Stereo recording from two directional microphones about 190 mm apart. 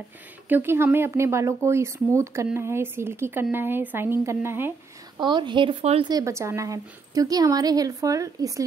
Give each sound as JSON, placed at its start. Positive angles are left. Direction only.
{"t": 0.5, "sound": "speech", "side_deg": -10}
{"t": 5.2, "sound": "a woman's voice", "side_deg": -25}